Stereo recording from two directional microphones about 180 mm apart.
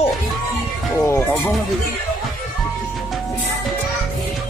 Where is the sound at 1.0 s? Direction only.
10° left (ahead or behind).